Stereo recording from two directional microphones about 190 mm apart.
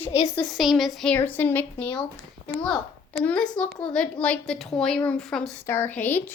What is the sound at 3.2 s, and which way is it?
A woman's voice, 5° left (ahead or behind).